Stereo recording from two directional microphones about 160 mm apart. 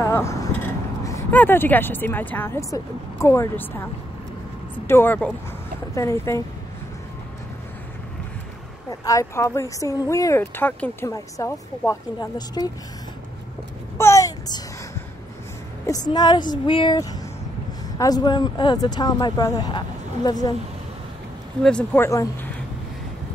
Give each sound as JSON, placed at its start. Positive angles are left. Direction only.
{"t": 0.0, "sound": "a sound", "side_deg": 20}
{"t": 1.0, "sound": "speech", "side_deg": 15}
{"t": 4.8, "sound": "speech", "side_deg": 15}
{"t": 9.0, "sound": "speech", "side_deg": 20}
{"t": 13.9, "sound": "babbling", "side_deg": 20}
{"t": 16.1, "sound": "speech", "side_deg": 25}
{"t": 21.6, "sound": "speech", "side_deg": 10}